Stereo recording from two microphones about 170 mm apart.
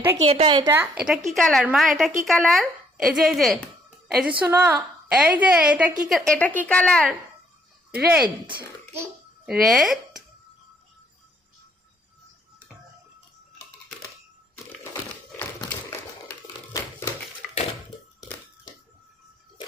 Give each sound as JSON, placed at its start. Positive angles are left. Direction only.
{"t": 0.2, "sound": "a woman's voice", "side_deg": -35}
{"t": 0.7, "sound": "a woman's voice", "side_deg": -10}
{"t": 7.9, "sound": "speech", "side_deg": -10}
{"t": 9.5, "sound": "a woman's voice", "side_deg": 0}
{"t": 15.4, "sound": "tap", "side_deg": 10}